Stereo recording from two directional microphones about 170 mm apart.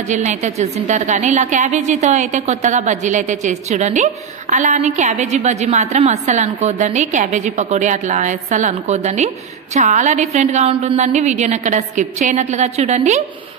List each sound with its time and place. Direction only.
0.1 s a woman's voice: 45° right (ahead or behind)